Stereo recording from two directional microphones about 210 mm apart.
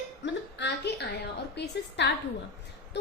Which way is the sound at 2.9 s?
55° left (ahead or behind).